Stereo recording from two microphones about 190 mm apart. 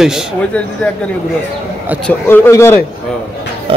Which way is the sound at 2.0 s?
10° left (ahead or behind).